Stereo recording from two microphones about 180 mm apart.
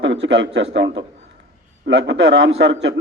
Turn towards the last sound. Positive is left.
turn(degrees=-90)